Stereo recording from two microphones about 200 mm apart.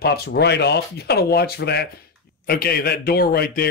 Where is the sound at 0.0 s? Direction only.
50° left (ahead or behind).